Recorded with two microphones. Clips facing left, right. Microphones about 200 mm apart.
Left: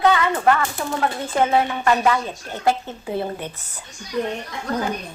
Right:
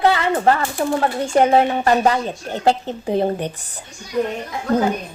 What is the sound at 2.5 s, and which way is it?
A woman's voice, 20° right (ahead or behind).